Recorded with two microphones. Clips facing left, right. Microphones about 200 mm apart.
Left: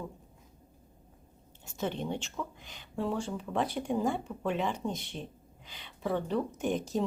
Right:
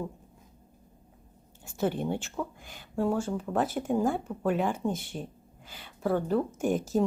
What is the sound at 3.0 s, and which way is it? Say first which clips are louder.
Speech: right 5 dB; 50° right (ahead or behind).